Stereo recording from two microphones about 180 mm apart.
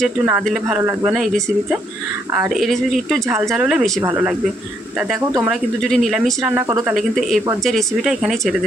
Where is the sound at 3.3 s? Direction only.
15° right (ahead or behind).